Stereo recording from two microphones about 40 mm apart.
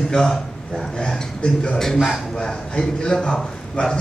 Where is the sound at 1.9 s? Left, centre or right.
Centre.